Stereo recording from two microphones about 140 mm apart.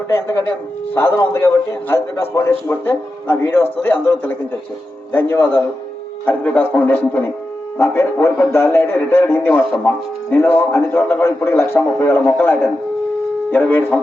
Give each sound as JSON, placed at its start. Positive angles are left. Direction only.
{"t": 0.1, "sound": "a man's voice", "side_deg": 15}